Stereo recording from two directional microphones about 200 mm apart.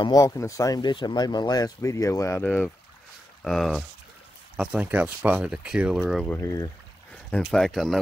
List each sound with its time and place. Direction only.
0.0 s speech: 15° left (ahead or behind); by 6.3 s centre (ahead or behind)
6.3 s speech: 15° left (ahead or behind)
7.2 s speech: 5° left (ahead or behind)